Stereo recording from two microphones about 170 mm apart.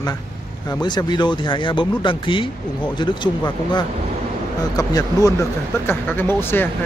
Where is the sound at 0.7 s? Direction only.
25° left (ahead or behind).